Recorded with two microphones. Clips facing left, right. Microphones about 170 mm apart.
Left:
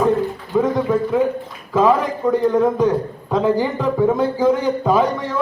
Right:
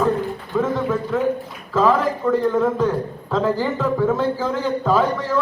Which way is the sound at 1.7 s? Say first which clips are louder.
Left 2 dB; 15° left (ahead or behind).